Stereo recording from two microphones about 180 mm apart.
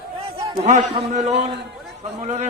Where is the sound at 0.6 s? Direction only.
40° right (ahead or behind).